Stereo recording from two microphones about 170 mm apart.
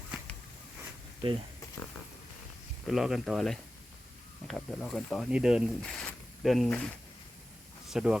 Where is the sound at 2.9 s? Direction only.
Centre (ahead or behind).